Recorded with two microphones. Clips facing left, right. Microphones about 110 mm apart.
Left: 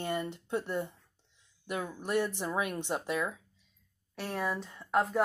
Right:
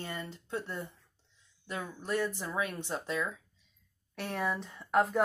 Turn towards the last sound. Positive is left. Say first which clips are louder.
# right 1 dB
turn(degrees=0)  # may be behind; listen again after turning